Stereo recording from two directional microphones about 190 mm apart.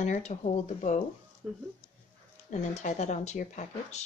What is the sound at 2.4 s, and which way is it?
A woman's voice, 40° left (ahead or behind).